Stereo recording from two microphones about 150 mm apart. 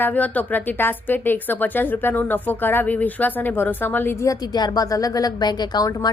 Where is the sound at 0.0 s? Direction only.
10° left (ahead or behind).